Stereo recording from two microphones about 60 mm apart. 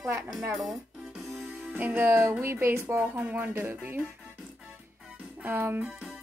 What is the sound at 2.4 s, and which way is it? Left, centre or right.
Music, right.